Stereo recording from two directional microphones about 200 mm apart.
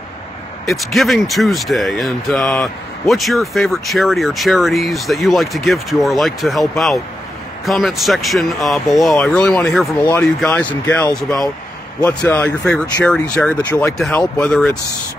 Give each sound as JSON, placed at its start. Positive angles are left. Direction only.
{"t": 0.7, "sound": "speech", "side_deg": 0}